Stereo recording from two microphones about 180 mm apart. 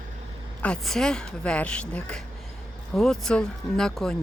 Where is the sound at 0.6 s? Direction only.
5° left (ahead or behind).